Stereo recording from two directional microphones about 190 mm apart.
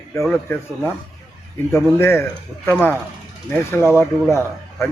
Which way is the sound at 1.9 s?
15° left (ahead or behind).